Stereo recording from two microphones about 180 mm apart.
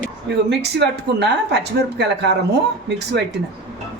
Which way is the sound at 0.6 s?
70° right (ahead or behind).